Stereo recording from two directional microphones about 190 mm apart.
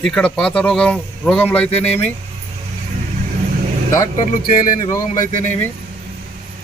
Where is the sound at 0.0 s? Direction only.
5° left (ahead or behind).